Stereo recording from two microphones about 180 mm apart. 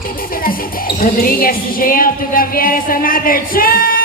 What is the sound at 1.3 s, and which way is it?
Speech, 55° left (ahead or behind).